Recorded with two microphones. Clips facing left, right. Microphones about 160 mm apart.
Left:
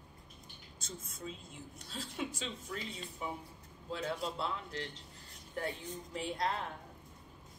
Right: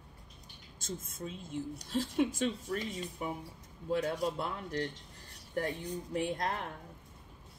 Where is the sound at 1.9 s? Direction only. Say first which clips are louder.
Right 10 dB; 50° right (ahead or behind).